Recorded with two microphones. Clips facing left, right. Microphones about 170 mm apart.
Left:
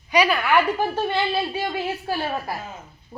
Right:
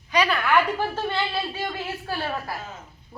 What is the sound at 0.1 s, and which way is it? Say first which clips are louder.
Speech: left 2 dB; 10° left (ahead or behind).